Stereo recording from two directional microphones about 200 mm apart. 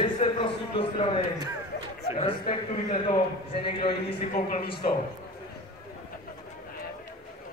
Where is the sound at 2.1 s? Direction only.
30° left (ahead or behind).